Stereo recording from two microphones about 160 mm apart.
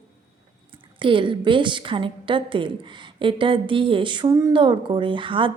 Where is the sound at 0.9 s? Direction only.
30° right (ahead or behind).